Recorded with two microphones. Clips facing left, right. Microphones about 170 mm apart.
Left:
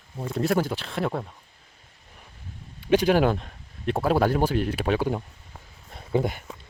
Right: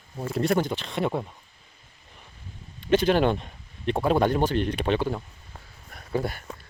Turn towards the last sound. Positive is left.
turn(degrees=20)  # may be behind; listen again after turning